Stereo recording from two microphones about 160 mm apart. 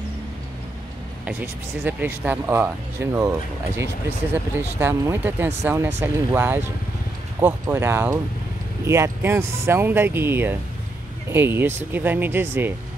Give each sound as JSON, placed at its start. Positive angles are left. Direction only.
{"t": 1.2, "sound": "speech", "side_deg": -10}
{"t": 7.6, "sound": "speech", "side_deg": -15}